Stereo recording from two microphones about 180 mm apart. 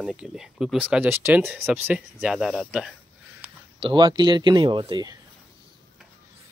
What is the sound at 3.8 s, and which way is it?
Speech, 25° right (ahead or behind).